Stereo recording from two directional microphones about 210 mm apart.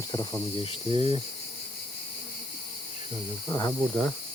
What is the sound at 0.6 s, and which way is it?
Cricket, 30° left (ahead or behind).